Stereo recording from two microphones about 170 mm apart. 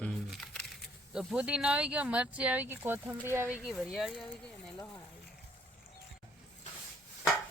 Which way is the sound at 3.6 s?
Centre (ahead or behind).